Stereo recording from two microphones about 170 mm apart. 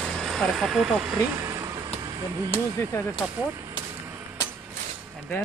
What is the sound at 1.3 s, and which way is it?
Vehicle, 20° right (ahead or behind).